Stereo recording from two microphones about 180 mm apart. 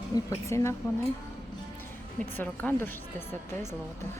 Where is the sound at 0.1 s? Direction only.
15° left (ahead or behind).